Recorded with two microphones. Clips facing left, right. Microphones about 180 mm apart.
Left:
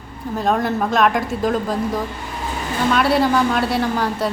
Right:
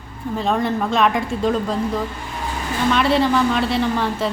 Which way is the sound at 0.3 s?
Centre (ahead or behind).